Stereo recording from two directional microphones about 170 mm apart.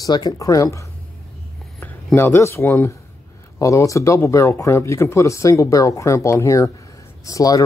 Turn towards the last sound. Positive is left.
turn(degrees=20)  # may be behind; listen again after turning